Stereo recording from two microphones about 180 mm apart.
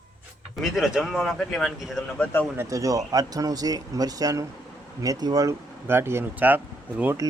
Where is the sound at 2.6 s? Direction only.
20° right (ahead or behind).